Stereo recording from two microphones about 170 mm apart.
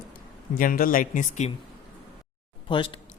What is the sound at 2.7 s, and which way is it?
Speech, 30° left (ahead or behind).